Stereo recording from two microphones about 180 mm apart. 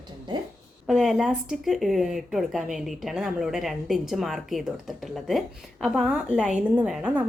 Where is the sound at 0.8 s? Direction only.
Centre (ahead or behind).